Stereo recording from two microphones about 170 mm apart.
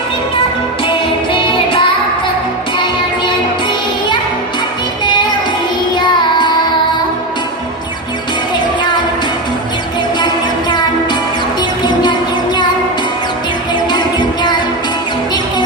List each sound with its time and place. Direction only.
0.9 s music: 30° left (ahead or behind)
5.9 s music: 25° left (ahead or behind)
10.7 s music: 25° left (ahead or behind)
13.8 s music: 25° left (ahead or behind)